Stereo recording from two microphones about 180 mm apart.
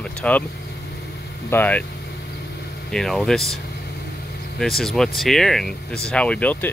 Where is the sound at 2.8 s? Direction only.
Centre (ahead or behind).